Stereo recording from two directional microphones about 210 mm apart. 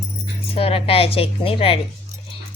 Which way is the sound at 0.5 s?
25° left (ahead or behind).